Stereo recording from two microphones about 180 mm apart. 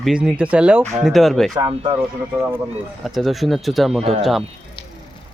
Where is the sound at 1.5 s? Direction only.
25° right (ahead or behind).